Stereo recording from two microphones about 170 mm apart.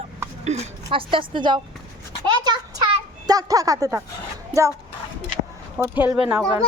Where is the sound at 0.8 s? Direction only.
30° right (ahead or behind).